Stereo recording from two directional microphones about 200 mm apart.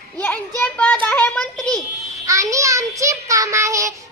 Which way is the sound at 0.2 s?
10° left (ahead or behind).